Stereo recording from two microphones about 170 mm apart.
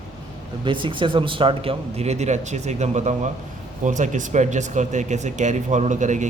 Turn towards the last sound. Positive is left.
turn(degrees=-45)  # may be behind; listen again after turning